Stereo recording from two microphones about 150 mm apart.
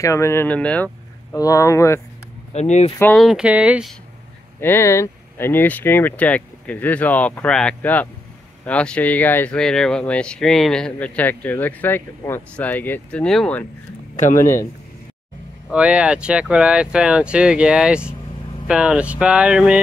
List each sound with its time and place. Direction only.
0.0 s speech: 20° left (ahead or behind)
1.3 s speech: 20° left (ahead or behind)
2.5 s speech: 50° left (ahead or behind)
3.2 s speech: 5° right (ahead or behind)
4.6 s speech: 15° left (ahead or behind)
14.1 s speech: 60° left (ahead or behind)
15.7 s speech: 10° right (ahead or behind)